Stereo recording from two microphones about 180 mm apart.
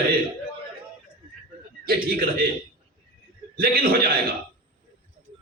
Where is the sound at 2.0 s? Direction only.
55° right (ahead or behind).